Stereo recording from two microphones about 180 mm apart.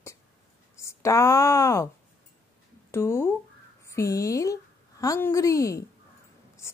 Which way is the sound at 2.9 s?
15° left (ahead or behind).